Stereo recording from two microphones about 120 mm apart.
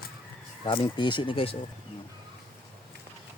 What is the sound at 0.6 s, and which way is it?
Speech, 45° left (ahead or behind).